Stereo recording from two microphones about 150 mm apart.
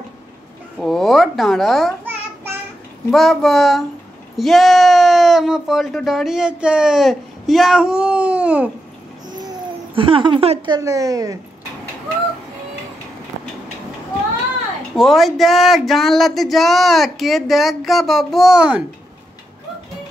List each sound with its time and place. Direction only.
0.7 s speech: centre (ahead or behind)
2.0 s child singing: 15° right (ahead or behind)
3.1 s speech: centre (ahead or behind)
9.9 s speech: 35° right (ahead or behind)
10.7 s a woman's voice: 20° right (ahead or behind)
15.0 s speech: centre (ahead or behind)